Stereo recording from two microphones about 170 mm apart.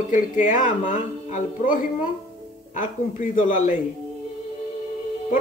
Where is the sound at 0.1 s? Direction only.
50° left (ahead or behind).